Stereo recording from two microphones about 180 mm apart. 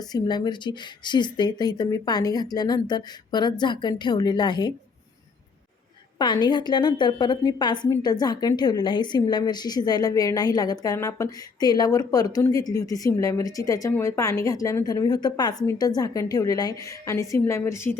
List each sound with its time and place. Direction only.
0.0 s a woman's voice: 20° left (ahead or behind)
6.1 s a woman's voice: 25° left (ahead or behind)